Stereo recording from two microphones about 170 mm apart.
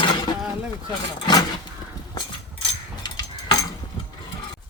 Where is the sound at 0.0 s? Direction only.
25° left (ahead or behind).